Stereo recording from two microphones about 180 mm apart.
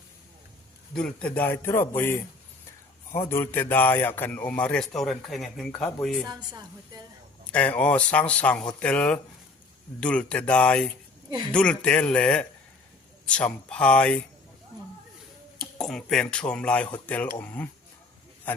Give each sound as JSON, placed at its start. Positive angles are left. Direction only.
{"t": 0.9, "sound": "a man's voice", "side_deg": 5}
{"t": 3.2, "sound": "a man's voice", "side_deg": 10}
{"t": 6.2, "sound": "a woman's voice", "side_deg": -20}
{"t": 7.5, "sound": "a man's voice", "side_deg": 5}
{"t": 15.8, "sound": "a man's voice", "side_deg": 5}